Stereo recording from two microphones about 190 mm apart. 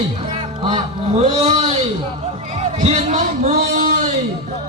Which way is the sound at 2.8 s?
35° right (ahead or behind).